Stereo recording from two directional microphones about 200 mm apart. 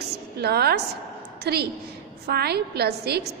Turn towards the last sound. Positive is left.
turn(degrees=-55)  # may be behind; listen again after turning